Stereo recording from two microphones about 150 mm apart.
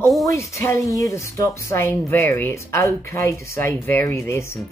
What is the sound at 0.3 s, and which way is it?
Speech, 20° left (ahead or behind).